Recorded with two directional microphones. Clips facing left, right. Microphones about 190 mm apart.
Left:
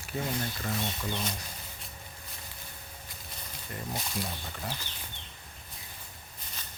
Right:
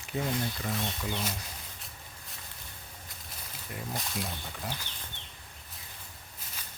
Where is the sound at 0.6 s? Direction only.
Centre (ahead or behind).